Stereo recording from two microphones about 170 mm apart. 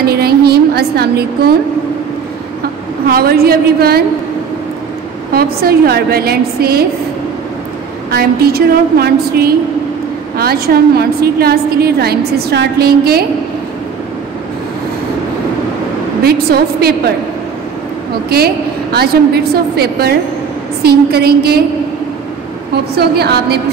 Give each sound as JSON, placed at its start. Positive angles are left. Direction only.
{"t": 0.1, "sound": "a sound", "side_deg": -65}
{"t": 3.1, "sound": "a woman's voice", "side_deg": -60}
{"t": 5.3, "sound": "a woman's voice", "side_deg": -65}
{"t": 8.1, "sound": "a woman's voice", "side_deg": -65}
{"t": 18.3, "sound": "a woman's voice", "side_deg": -70}
{"t": 22.9, "sound": "a woman's voice", "side_deg": -70}